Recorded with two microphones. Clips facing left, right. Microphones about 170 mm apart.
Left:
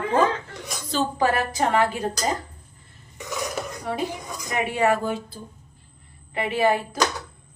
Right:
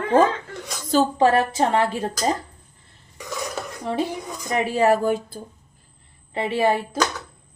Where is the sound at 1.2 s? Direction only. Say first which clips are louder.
Right 4 dB; 25° right (ahead or behind).